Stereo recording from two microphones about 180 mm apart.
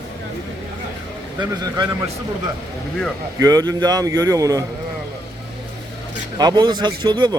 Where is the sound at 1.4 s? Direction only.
20° right (ahead or behind).